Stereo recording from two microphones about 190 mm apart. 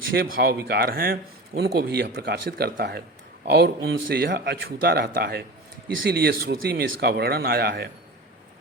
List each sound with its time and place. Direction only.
0.3 s speech: 85° right
0.8 s speech: 50° right (ahead or behind)